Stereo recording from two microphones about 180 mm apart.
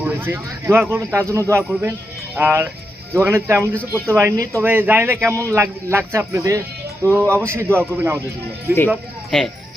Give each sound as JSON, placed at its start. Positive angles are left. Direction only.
{"t": 0.0, "sound": "speech", "side_deg": -10}
{"t": 9.3, "sound": "speech", "side_deg": 5}